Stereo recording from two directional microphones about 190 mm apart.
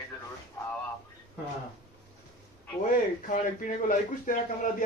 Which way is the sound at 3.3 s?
45° left (ahead or behind).